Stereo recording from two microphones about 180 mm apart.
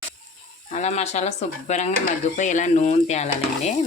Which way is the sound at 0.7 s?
40° left (ahead or behind).